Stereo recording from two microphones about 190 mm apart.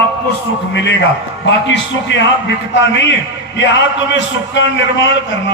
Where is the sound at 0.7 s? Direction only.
65° left (ahead or behind).